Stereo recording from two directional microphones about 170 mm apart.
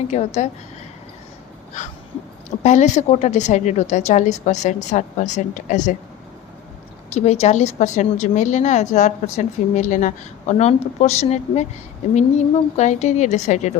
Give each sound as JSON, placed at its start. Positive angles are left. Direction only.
{"t": 0.1, "sound": "a woman's voice", "side_deg": 40}
{"t": 2.6, "sound": "a woman's voice", "side_deg": 45}
{"t": 7.1, "sound": "a woman's voice", "side_deg": 40}